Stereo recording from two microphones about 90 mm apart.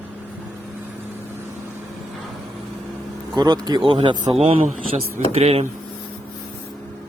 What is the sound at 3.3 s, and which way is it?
Speech, 50° right (ahead or behind).